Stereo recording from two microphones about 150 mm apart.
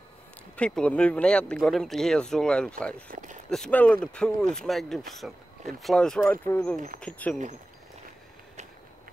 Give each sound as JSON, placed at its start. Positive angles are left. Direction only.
{"t": 0.6, "sound": "speech", "side_deg": 5}
{"t": 3.1, "sound": "speech", "side_deg": -60}
{"t": 3.4, "sound": "speech", "side_deg": 5}